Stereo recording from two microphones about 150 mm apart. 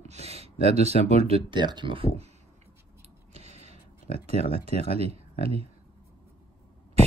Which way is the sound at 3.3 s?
45° right (ahead or behind).